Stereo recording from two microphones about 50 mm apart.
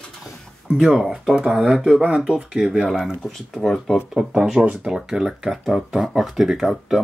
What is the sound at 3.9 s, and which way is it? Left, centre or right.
Speech, centre.